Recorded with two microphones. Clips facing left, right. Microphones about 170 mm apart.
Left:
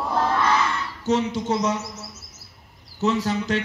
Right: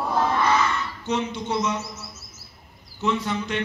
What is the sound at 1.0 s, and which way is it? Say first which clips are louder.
Speech: left 5 dB; 40° left (ahead or behind).